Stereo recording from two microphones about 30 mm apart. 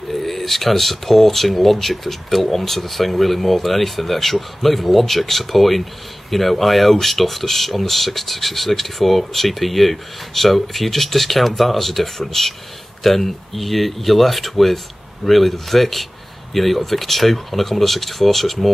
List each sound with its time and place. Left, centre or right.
0.1 s speech: centre